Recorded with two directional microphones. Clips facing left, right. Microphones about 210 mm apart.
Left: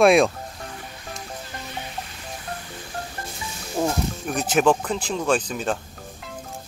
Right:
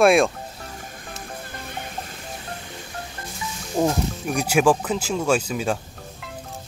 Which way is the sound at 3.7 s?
10° right (ahead or behind).